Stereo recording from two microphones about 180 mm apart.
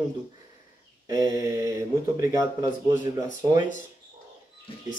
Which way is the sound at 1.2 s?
20° right (ahead or behind).